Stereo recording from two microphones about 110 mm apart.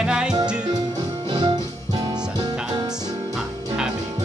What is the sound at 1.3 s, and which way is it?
Music, 40° right (ahead or behind).